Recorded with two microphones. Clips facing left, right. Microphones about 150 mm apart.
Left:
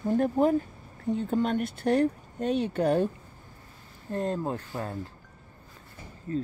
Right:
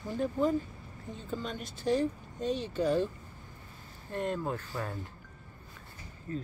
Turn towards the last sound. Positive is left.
turn(degrees=35)  # may be behind; listen again after turning